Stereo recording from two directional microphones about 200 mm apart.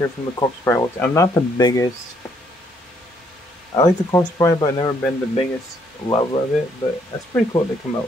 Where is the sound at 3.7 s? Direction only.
15° left (ahead or behind).